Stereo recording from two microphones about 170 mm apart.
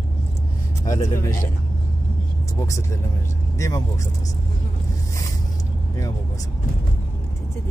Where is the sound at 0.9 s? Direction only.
20° left (ahead or behind).